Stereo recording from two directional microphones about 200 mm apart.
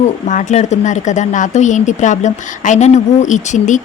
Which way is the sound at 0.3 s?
40° left (ahead or behind).